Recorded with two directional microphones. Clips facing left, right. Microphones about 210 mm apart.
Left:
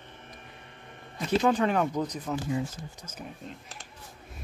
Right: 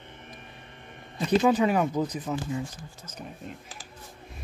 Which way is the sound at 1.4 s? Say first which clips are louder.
Right 1 dB; 5° right (ahead or behind).